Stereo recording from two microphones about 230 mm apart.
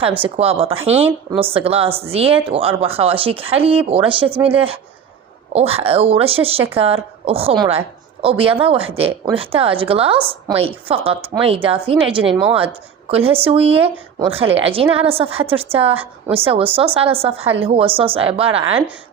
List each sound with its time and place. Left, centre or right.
0.2 s speech: right
12.3 s a woman's voice: centre
12.5 s speech: right